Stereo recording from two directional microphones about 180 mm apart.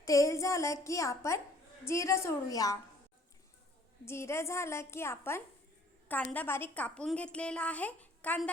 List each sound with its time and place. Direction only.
0.0 s a woman's voice: 15° left (ahead or behind)
4.0 s a woman's voice: 15° left (ahead or behind)